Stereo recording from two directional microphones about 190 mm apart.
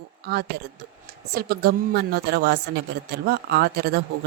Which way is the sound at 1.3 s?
55° right (ahead or behind).